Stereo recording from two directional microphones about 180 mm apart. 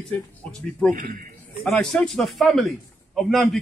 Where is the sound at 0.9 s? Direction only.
50° right (ahead or behind).